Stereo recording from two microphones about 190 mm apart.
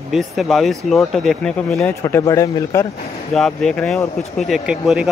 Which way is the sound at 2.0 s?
15° left (ahead or behind).